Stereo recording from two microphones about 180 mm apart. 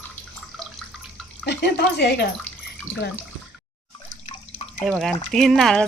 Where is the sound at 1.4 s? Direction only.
65° left (ahead or behind).